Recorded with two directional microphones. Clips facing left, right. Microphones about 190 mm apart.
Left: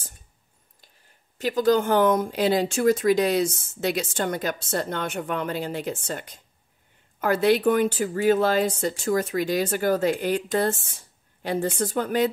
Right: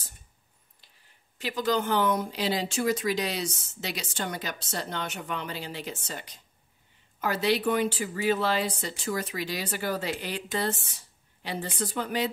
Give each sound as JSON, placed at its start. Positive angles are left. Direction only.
{"t": 1.4, "sound": "speech", "side_deg": 45}